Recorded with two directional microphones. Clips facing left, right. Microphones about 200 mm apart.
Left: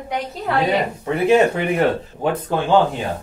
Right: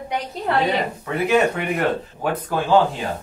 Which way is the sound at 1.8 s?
25° left (ahead or behind).